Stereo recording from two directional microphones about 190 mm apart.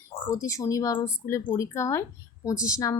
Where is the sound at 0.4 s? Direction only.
15° left (ahead or behind).